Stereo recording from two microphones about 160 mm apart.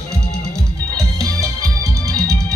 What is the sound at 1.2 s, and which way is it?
Music, 20° right (ahead or behind).